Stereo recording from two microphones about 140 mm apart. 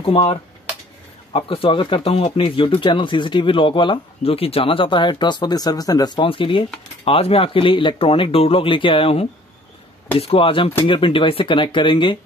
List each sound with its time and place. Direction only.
0.0 s speech: 40° left (ahead or behind)